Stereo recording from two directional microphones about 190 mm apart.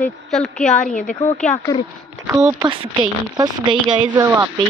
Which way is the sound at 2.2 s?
15° right (ahead or behind).